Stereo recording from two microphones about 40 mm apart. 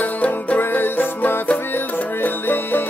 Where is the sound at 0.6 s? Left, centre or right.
Left.